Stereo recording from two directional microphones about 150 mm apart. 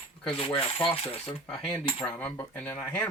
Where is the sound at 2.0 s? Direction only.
10° left (ahead or behind).